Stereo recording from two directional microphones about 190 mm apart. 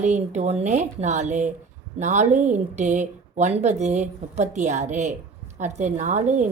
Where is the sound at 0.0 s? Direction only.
40° right (ahead or behind).